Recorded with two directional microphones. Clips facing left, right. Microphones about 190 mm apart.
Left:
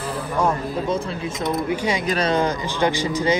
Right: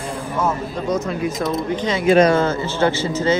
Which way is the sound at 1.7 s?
10° left (ahead or behind).